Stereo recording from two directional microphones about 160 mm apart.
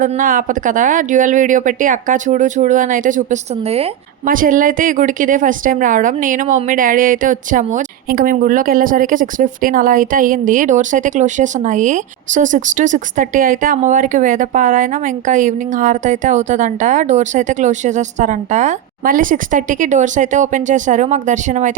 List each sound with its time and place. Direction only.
0.2 s speech: 60° right (ahead or behind)
4.3 s a woman's voice: 60° right (ahead or behind)